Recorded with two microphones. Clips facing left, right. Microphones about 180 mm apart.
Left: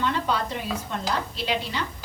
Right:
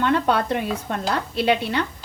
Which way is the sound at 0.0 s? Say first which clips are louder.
Right 6 dB; 60° right (ahead or behind).